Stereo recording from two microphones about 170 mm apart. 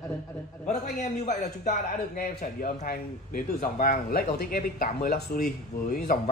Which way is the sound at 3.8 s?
60° left (ahead or behind).